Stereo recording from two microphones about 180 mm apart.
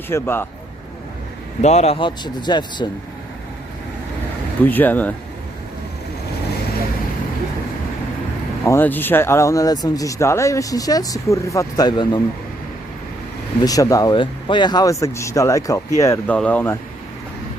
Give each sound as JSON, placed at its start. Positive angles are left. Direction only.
{"t": 0.1, "sound": "speech", "side_deg": 10}
{"t": 1.6, "sound": "speech", "side_deg": 35}
{"t": 4.6, "sound": "speech", "side_deg": 10}
{"t": 8.6, "sound": "speech", "side_deg": 10}
{"t": 13.6, "sound": "speech", "side_deg": 20}